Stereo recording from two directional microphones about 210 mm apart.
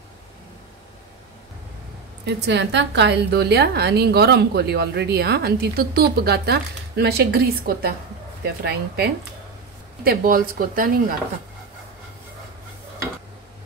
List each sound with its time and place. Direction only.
2.2 s a woman's voice: 55° right (ahead or behind)